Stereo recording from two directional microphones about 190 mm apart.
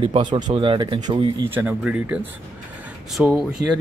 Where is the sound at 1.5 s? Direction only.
10° right (ahead or behind).